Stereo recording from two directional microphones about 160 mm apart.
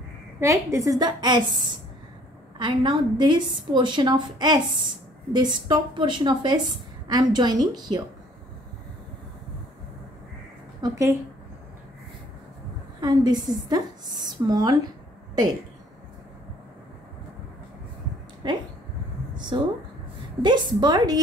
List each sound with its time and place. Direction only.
0.4 s a woman's voice: 20° right (ahead or behind)
2.6 s a woman's voice: 30° right (ahead or behind)
10.8 s a woman's voice: 20° right (ahead or behind)
13.0 s a woman's voice: 25° right (ahead or behind)
18.4 s a woman's voice: 30° right (ahead or behind)